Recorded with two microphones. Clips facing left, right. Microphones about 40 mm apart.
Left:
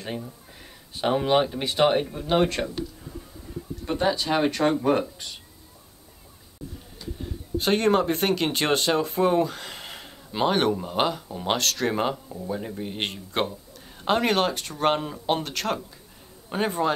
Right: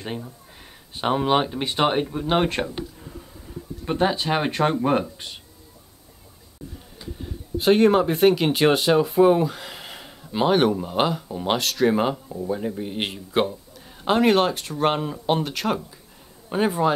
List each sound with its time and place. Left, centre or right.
0.0 s speech: centre
7.2 s speech: centre